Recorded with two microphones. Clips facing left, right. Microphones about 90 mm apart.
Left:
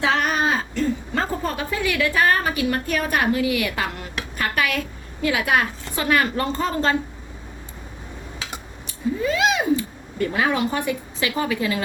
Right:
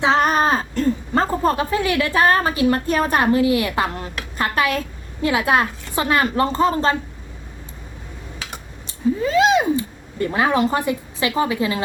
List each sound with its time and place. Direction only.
0.0 s a woman's voice: 35° right (ahead or behind)
9.2 s cat: 30° right (ahead or behind)